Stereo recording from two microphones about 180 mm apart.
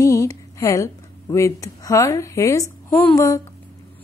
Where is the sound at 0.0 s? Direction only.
15° left (ahead or behind).